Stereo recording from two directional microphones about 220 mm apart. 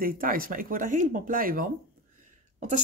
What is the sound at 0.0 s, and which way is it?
Speech, 40° right (ahead or behind).